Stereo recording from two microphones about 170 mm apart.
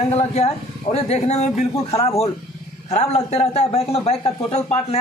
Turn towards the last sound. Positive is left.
turn(degrees=40)  # may be behind; listen again after turning